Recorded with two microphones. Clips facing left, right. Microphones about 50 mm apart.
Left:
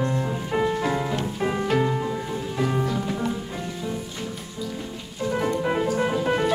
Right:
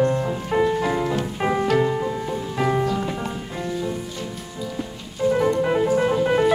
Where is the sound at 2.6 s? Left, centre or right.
Right.